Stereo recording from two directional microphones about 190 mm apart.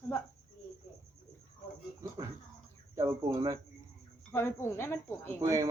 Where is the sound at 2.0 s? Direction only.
15° right (ahead or behind).